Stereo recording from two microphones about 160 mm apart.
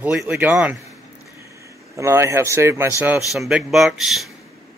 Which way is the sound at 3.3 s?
5° right (ahead or behind).